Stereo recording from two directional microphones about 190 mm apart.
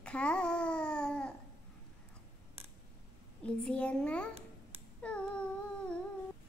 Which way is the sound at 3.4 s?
5° left (ahead or behind).